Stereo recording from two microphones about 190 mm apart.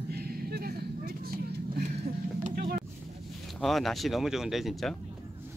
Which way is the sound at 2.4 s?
50° right (ahead or behind).